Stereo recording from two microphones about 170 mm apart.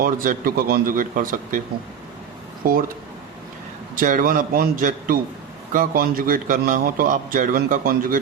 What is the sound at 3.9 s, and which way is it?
A man's voice, 50° right (ahead or behind).